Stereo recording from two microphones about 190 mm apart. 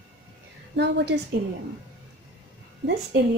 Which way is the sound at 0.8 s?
65° right (ahead or behind).